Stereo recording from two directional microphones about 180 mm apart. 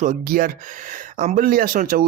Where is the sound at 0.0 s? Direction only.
45° right (ahead or behind).